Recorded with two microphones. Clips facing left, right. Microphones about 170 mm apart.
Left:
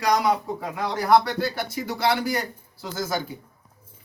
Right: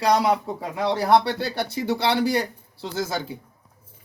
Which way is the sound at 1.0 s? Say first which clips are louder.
Left 1 dB; 30° right (ahead or behind).